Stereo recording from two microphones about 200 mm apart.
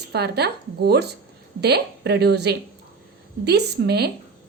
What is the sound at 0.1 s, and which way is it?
A woman's voice, 55° right (ahead or behind).